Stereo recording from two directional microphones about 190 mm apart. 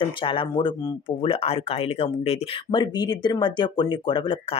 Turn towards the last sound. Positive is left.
turn(degrees=25)  # may be behind; listen again after turning